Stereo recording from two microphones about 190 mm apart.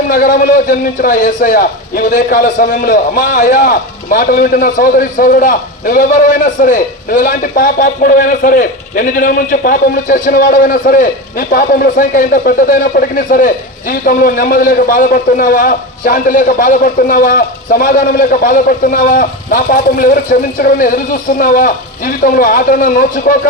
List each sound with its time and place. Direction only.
0.1 s a man's voice: 45° left (ahead or behind)